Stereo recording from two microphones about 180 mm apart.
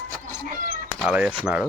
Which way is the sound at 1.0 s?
5° right (ahead or behind).